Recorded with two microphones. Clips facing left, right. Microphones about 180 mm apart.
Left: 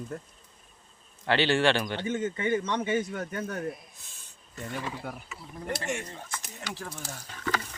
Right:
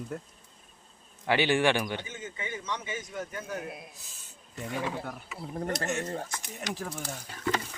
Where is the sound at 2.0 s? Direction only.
60° left (ahead or behind).